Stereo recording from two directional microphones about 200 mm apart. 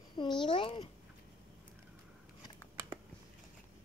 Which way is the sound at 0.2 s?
25° left (ahead or behind).